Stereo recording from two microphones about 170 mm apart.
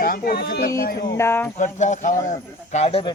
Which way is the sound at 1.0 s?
15° left (ahead or behind).